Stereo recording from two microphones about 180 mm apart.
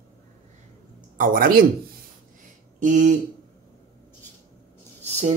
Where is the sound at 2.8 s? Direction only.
40° right (ahead or behind).